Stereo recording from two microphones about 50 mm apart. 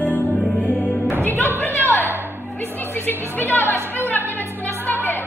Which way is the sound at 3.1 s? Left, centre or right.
Left.